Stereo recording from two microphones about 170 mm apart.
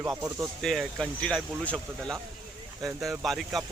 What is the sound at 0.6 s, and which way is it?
Speech, centre (ahead or behind).